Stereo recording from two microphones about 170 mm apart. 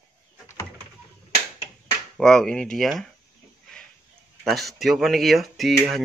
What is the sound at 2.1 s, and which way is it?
Speech, 5° left (ahead or behind).